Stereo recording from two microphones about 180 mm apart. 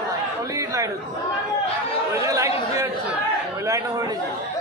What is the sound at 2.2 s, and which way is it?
Chatter, 15° right (ahead or behind).